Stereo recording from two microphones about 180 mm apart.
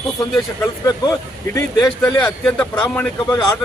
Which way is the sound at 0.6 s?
20° left (ahead or behind).